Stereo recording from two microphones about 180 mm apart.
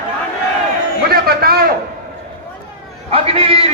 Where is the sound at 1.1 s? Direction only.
60° right (ahead or behind).